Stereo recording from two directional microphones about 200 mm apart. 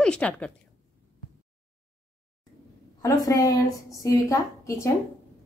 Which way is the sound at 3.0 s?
20° left (ahead or behind).